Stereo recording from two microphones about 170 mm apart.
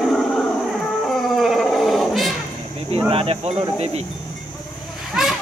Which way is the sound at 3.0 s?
35° right (ahead or behind).